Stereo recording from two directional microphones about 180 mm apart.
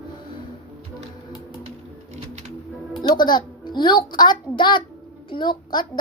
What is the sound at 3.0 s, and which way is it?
A child's voice, 25° left (ahead or behind).